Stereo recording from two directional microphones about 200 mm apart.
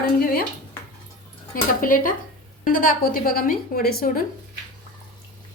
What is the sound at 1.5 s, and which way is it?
A woman's voice, 45° left (ahead or behind).